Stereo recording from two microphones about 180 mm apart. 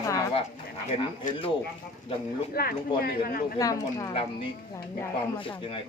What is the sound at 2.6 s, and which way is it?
Speech, 60° left (ahead or behind).